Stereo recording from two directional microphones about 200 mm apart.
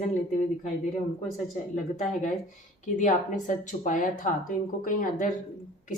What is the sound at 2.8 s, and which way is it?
Speech, 40° left (ahead or behind).